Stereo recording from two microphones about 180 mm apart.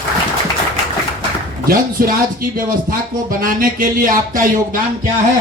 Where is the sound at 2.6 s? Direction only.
50° right (ahead or behind).